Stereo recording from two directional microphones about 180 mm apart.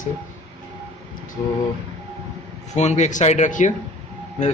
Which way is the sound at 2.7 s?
40° left (ahead or behind).